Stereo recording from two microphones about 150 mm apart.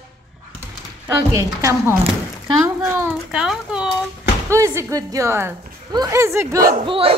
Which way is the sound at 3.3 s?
5° right (ahead or behind).